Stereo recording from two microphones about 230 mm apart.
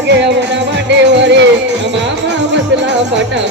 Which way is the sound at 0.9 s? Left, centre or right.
Right.